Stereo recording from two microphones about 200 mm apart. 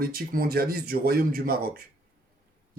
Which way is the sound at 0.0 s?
50° right (ahead or behind).